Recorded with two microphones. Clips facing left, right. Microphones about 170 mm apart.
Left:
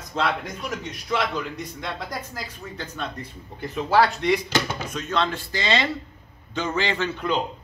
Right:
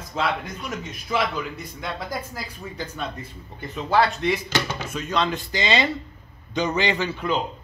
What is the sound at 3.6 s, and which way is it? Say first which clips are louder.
A man's voice: left 1 dB; centre (ahead or behind).